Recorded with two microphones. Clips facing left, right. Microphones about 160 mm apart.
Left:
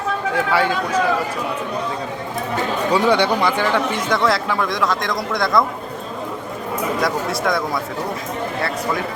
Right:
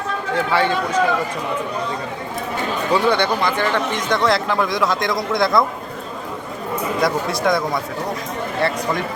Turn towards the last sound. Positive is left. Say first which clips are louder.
# right 1 dB
turn(degrees=0)  # may be behind; listen again after turning